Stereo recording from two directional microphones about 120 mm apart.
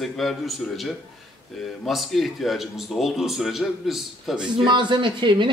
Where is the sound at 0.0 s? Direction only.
Centre (ahead or behind).